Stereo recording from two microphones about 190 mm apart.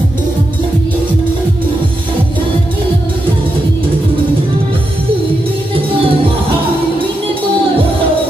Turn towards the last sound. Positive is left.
turn(degrees=-30)  # may be behind; listen again after turning